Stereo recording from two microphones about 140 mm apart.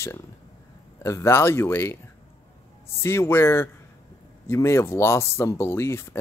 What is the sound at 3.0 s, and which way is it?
Speech, 20° left (ahead or behind).